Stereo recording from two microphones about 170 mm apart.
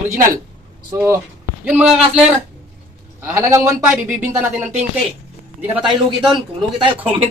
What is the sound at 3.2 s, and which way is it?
Speech, 15° right (ahead or behind).